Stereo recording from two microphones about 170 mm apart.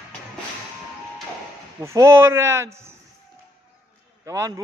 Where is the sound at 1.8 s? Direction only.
15° right (ahead or behind).